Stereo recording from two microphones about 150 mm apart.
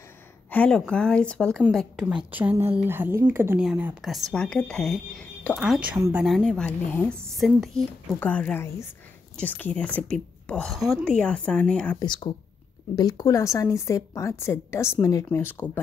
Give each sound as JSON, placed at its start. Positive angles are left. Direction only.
{"t": 0.5, "sound": "a woman's voice", "side_deg": 5}
{"t": 4.1, "sound": "a woman's voice", "side_deg": 5}
{"t": 5.9, "sound": "speech", "side_deg": -20}
{"t": 6.2, "sound": "a woman's voice", "side_deg": 0}
{"t": 12.0, "sound": "a woman's voice", "side_deg": 30}